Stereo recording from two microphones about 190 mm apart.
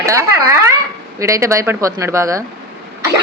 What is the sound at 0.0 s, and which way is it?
A woman's voice, 15° right (ahead or behind).